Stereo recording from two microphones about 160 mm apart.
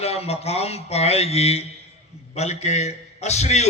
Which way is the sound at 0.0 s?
40° left (ahead or behind).